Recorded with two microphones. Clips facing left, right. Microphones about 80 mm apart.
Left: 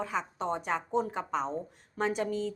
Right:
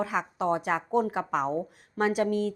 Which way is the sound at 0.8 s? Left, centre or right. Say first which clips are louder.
Right 4 dB; centre.